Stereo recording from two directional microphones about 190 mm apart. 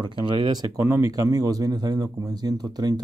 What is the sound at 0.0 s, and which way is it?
Speech, 25° right (ahead or behind).